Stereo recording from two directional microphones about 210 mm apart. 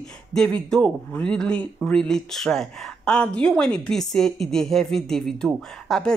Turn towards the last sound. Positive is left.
turn(degrees=5)  # may be behind; listen again after turning